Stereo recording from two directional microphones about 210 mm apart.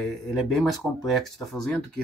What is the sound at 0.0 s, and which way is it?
Speech, centre (ahead or behind).